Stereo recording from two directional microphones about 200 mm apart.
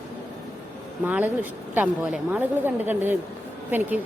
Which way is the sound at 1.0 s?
10° right (ahead or behind).